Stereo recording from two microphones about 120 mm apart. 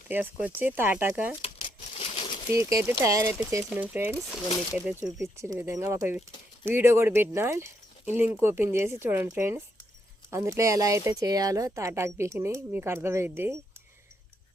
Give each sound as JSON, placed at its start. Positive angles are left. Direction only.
{"t": 0.1, "sound": "speech", "side_deg": -15}
{"t": 1.4, "sound": "crumpling", "side_deg": 55}
{"t": 2.6, "sound": "speech", "side_deg": -25}
{"t": 5.2, "sound": "speech", "side_deg": -20}